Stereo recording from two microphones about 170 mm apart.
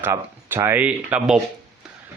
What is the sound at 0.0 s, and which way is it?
Speech, 15° right (ahead or behind).